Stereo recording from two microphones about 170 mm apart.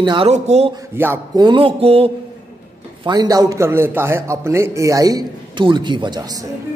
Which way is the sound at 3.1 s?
20° right (ahead or behind).